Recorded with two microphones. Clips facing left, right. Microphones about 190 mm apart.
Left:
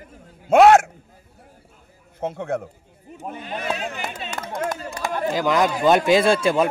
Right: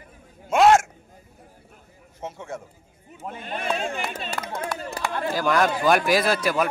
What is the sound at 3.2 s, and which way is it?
Speech, 15° left (ahead or behind).